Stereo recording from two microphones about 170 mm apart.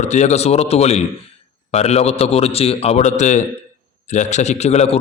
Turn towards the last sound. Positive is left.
turn(degrees=40)  # may be behind; listen again after turning